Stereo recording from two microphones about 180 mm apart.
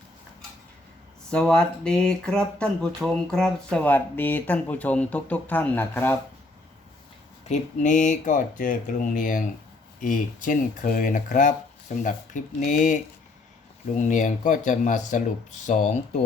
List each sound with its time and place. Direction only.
1.3 s speech: 5° left (ahead or behind)
7.4 s speech: 40° left (ahead or behind)